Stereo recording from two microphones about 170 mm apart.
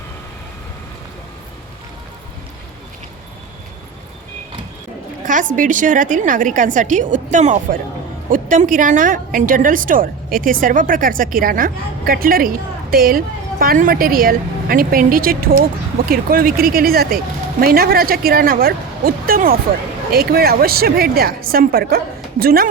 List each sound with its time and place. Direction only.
5.2 s a woman's voice: 50° right (ahead or behind)